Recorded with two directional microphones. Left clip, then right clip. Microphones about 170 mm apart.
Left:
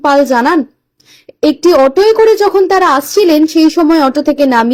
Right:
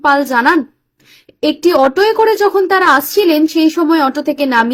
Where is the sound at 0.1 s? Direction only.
10° left (ahead or behind).